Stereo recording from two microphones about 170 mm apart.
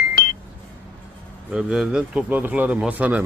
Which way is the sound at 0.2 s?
60° left (ahead or behind).